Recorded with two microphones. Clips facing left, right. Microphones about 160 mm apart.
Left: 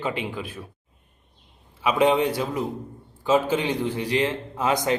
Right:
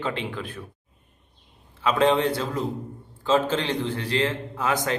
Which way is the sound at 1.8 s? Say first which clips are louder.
Left 1 dB; 15° left (ahead or behind).